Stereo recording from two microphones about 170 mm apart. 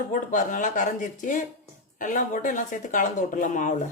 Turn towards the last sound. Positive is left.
turn(degrees=45)  # may be behind; listen again after turning